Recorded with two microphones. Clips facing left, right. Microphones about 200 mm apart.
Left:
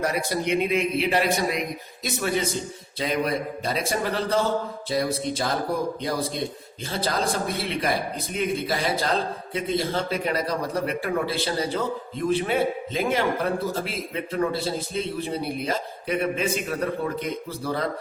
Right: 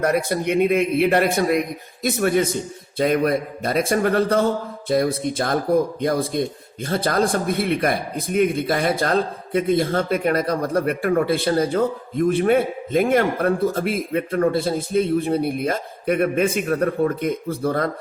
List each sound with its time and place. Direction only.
0.0 s a man's voice: 55° right (ahead or behind)